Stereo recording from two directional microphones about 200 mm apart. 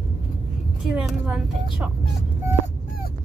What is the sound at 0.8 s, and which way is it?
Speech, centre (ahead or behind).